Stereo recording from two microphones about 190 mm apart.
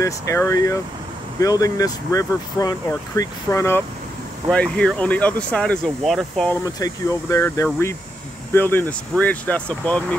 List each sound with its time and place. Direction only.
0.0 s speech: 15° left (ahead or behind)
6.6 s speech: 20° left (ahead or behind)